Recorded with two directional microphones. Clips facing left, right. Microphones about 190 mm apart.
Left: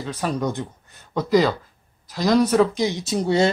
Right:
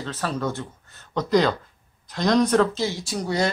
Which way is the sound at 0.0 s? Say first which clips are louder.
Left 3 dB; 15° left (ahead or behind).